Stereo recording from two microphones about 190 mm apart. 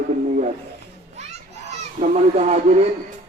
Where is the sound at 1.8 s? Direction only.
40° right (ahead or behind).